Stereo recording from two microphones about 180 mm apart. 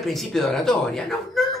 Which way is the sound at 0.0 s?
Centre (ahead or behind).